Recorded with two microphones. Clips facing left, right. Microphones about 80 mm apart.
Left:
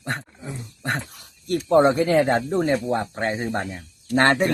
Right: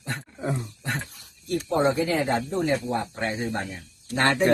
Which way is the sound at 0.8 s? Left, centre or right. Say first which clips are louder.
Left 4 dB; left.